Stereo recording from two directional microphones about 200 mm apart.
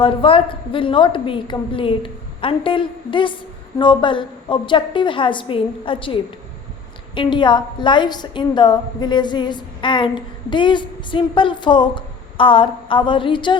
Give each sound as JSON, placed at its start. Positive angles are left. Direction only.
{"t": 0.0, "sound": "a woman's voice", "side_deg": 25}
{"t": 7.2, "sound": "a woman's voice", "side_deg": 25}